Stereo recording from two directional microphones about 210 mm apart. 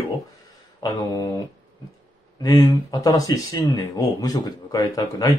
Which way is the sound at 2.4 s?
20° left (ahead or behind).